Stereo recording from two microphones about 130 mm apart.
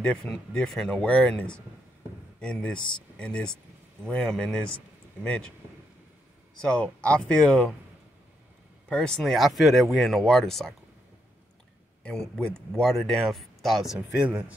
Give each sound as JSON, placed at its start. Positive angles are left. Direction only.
{"t": 0.0, "sound": "speech", "side_deg": 5}
{"t": 6.6, "sound": "speech", "side_deg": 5}
{"t": 8.8, "sound": "speech", "side_deg": 5}
{"t": 12.0, "sound": "speech", "side_deg": 5}